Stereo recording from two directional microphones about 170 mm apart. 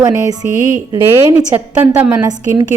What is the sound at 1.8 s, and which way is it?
Speech, 10° right (ahead or behind).